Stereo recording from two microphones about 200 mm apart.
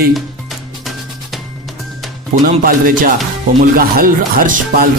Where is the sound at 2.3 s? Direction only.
40° right (ahead or behind).